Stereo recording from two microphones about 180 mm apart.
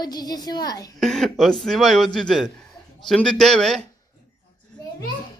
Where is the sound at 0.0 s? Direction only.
20° left (ahead or behind).